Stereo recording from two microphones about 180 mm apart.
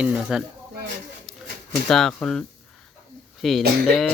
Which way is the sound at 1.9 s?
Centre (ahead or behind).